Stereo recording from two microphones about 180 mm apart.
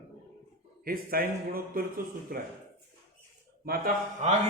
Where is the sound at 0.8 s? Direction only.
55° right (ahead or behind).